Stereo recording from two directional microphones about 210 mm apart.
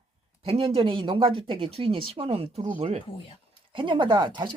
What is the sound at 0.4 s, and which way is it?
Speech, 25° right (ahead or behind).